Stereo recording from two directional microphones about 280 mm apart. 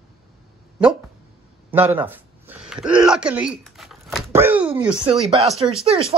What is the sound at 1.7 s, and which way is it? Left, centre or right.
Speech, centre.